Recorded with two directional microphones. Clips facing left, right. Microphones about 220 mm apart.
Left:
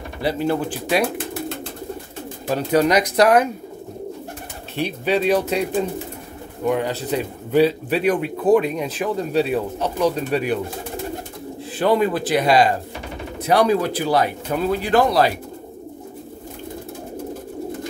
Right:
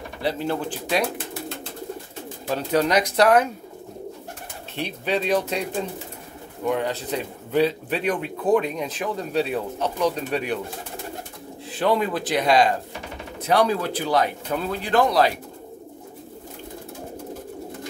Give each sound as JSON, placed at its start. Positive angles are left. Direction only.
{"t": 0.2, "sound": "a man's voice", "side_deg": 10}
{"t": 2.5, "sound": "a man's voice", "side_deg": 10}
{"t": 4.7, "sound": "a man's voice", "side_deg": 5}
{"t": 11.8, "sound": "a man's voice", "side_deg": 5}